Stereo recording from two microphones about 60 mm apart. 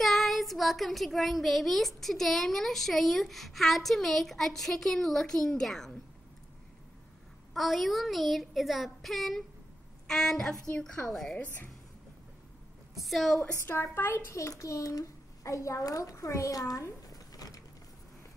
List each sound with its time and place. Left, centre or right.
0.0 s a child's voice: centre
7.5 s a child's voice: centre
11.3 s speech: left
12.9 s a child's voice: centre
13.9 s speech: left
14.3 s a child's voice: left